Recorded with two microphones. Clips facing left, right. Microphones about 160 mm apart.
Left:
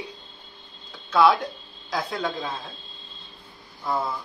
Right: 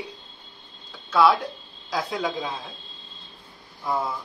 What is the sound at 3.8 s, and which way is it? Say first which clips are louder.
Speech: even; 10° right (ahead or behind).